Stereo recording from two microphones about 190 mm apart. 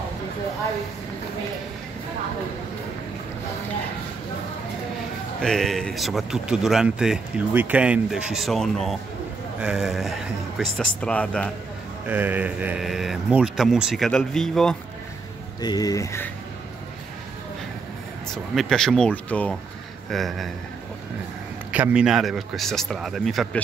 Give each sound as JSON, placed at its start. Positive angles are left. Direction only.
{"t": 5.4, "sound": "speech", "side_deg": 0}
{"t": 12.1, "sound": "speech", "side_deg": -10}
{"t": 15.6, "sound": "speech", "side_deg": 20}
{"t": 18.3, "sound": "speech", "side_deg": 0}
{"t": 21.7, "sound": "speech", "side_deg": -5}